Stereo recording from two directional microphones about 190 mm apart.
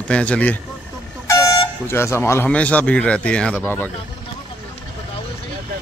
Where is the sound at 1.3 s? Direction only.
20° left (ahead or behind).